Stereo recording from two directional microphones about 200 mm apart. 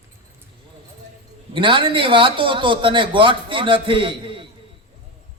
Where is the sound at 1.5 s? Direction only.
25° right (ahead or behind).